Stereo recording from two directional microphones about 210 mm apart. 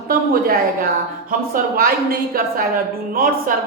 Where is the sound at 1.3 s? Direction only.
40° right (ahead or behind).